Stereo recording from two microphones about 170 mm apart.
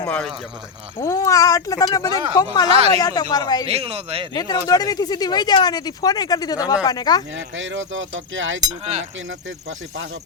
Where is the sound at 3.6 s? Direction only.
35° right (ahead or behind).